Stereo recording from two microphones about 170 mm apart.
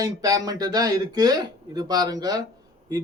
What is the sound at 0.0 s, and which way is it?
Speech, 20° right (ahead or behind).